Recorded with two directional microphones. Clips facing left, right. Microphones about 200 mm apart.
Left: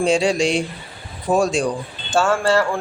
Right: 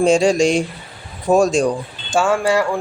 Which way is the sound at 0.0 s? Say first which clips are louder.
Right 4 dB; 45° right (ahead or behind).